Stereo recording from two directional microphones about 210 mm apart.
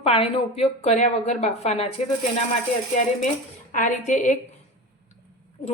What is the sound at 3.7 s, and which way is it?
Speech, 35° left (ahead or behind).